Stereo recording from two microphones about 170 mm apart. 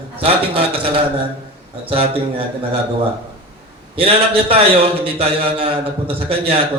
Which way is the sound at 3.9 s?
35° right (ahead or behind).